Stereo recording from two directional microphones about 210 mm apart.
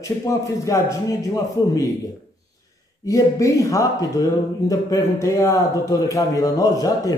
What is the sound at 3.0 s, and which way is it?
Speech, 15° left (ahead or behind).